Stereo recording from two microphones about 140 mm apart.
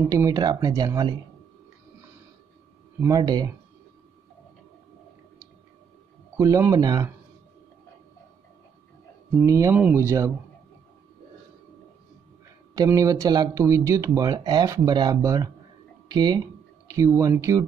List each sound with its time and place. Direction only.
0.1 s speech: 25° right (ahead or behind)
3.0 s speech: 25° right (ahead or behind)
6.3 s speech: 20° right (ahead or behind)
9.5 s speech: 25° right (ahead or behind)
12.7 s speech: 25° right (ahead or behind)